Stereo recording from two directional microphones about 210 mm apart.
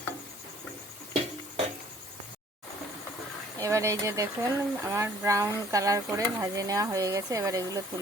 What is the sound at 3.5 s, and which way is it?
Speech, 15° right (ahead or behind).